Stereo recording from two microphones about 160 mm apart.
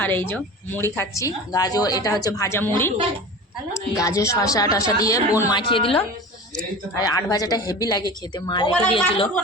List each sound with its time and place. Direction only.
0.0 s a woman's voice: 10° left (ahead or behind)
3.9 s speech: 20° left (ahead or behind)
7.0 s speech: 25° left (ahead or behind)